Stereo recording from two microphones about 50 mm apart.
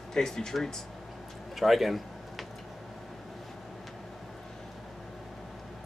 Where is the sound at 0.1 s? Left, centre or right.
Centre.